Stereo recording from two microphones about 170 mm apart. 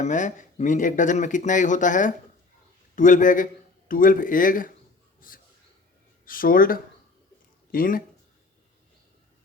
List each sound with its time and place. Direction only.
0.0 s speech: 45° left (ahead or behind)